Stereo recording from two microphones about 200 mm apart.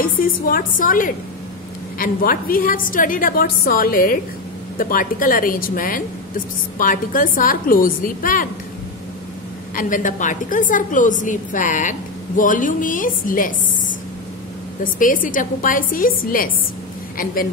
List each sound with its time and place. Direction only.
0.0 s a woman's voice: 45° left (ahead or behind)
9.8 s a woman's voice: 40° left (ahead or behind)
14.8 s a woman's voice: 40° left (ahead or behind)